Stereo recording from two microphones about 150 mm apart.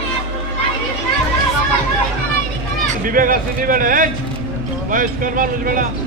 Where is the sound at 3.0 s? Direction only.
65° right (ahead or behind).